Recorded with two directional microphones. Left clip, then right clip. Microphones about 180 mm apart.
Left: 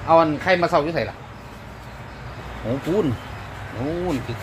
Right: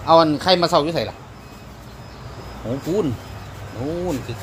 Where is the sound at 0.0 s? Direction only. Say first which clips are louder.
Right 2 dB; 15° right (ahead or behind).